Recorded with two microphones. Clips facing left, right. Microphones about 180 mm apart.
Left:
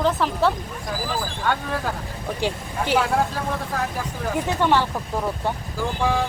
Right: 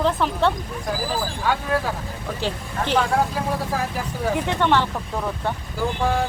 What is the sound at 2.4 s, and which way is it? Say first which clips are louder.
Speech: left 1 dB; 10° left (ahead or behind).